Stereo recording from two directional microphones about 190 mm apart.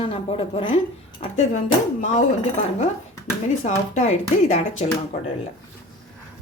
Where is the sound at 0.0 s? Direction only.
30° left (ahead or behind).